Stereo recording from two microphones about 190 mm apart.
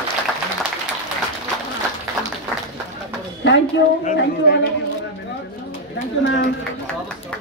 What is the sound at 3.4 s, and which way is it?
A woman's voice, 70° left (ahead or behind).